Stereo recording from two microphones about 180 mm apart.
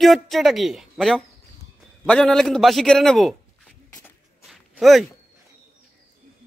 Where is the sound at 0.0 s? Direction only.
Centre (ahead or behind).